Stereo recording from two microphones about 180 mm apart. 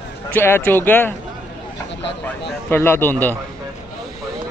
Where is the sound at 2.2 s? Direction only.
10° left (ahead or behind).